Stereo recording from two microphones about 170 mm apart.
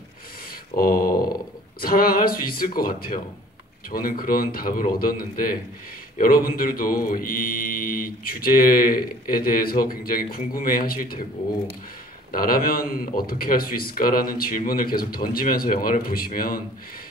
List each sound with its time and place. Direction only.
0.7 s speech: 60° left (ahead or behind)
12.3 s speech: 60° left (ahead or behind)